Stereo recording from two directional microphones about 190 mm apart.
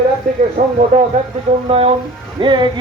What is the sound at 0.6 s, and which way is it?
A man's voice, 35° right (ahead or behind).